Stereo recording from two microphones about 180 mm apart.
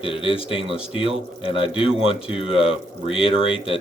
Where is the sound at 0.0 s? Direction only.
30° left (ahead or behind).